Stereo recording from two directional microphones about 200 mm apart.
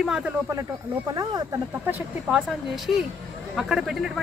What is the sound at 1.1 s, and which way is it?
Speech, 20° right (ahead or behind).